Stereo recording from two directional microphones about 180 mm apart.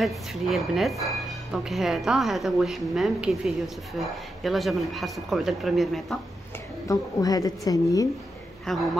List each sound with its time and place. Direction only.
0.0 s speech: centre (ahead or behind)
6.9 s a woman's voice: 20° left (ahead or behind)
8.7 s speech: centre (ahead or behind)